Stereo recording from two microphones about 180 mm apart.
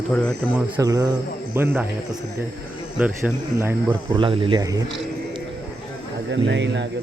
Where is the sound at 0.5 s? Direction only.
20° right (ahead or behind).